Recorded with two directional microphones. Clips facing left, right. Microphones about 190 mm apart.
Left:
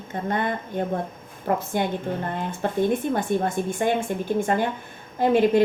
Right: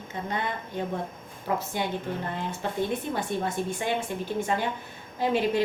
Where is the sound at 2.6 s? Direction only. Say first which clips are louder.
Left 7 dB; 50° left (ahead or behind).